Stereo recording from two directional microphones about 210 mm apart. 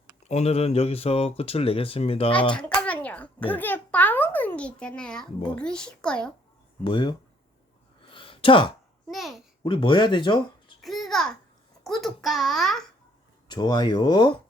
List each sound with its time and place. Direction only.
0.3 s speech: 30° left (ahead or behind)
2.6 s a sound: 5° left (ahead or behind)
5.5 s a child's voice: 5° left (ahead or behind)
6.8 s speech: 25° left (ahead or behind)
8.1 s a sound: 25° left (ahead or behind)
9.0 s a child's voice: centre (ahead or behind)
9.6 s speech: 20° left (ahead or behind)
10.8 s babbling: centre (ahead or behind)
11.9 s a child's voice: centre (ahead or behind)
13.5 s speech: 20° left (ahead or behind)